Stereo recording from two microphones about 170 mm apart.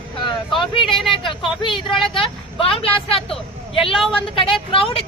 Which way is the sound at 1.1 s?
30° left (ahead or behind).